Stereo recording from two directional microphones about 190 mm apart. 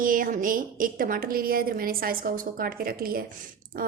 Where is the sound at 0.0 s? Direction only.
45° right (ahead or behind).